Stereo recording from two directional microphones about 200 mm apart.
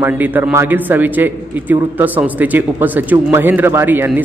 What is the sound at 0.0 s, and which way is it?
A man's voice, 10° right (ahead or behind).